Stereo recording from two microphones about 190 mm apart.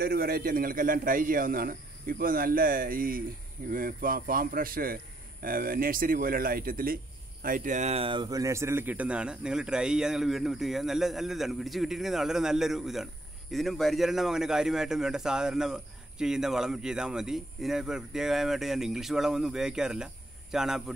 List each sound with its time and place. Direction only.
0.0 s speech: 50° right (ahead or behind); by 20.8 s 5° right (ahead or behind)